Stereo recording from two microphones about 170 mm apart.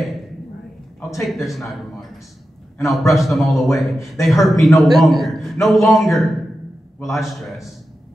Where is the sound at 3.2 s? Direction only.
Centre (ahead or behind).